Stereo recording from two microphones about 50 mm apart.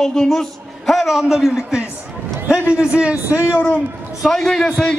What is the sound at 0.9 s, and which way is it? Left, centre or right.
Speech, centre.